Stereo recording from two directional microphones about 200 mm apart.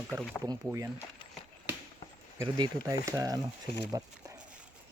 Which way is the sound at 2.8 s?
15° right (ahead or behind).